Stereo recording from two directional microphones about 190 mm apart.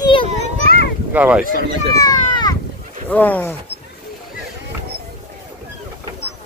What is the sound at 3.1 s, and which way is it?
Speech, 10° left (ahead or behind).